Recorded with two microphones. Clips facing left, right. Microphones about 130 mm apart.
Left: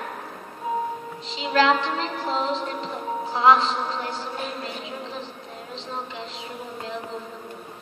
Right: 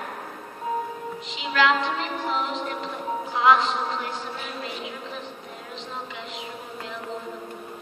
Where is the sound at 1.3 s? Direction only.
35° left (ahead or behind).